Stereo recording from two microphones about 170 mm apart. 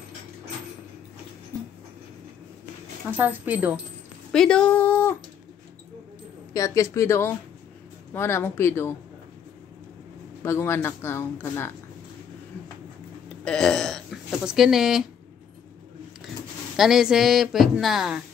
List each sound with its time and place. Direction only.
3.1 s speech: 10° right (ahead or behind)
4.3 s speech: 5° left (ahead or behind)
6.5 s speech: 20° left (ahead or behind)
10.4 s speech: 15° left (ahead or behind)
13.4 s a sound: 5° left (ahead or behind)
16.7 s speech: centre (ahead or behind)